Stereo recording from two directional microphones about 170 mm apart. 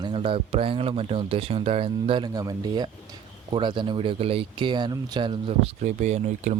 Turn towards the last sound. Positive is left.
turn(degrees=-45)  # may be behind; listen again after turning